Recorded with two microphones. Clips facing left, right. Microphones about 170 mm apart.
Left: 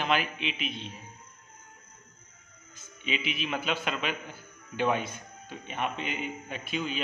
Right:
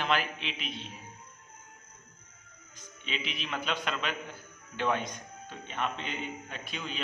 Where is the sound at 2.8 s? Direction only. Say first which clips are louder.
Left 4 dB; 5° left (ahead or behind).